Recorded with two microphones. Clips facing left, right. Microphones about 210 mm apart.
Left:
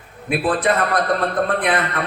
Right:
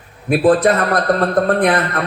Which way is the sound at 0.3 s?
40° right (ahead or behind).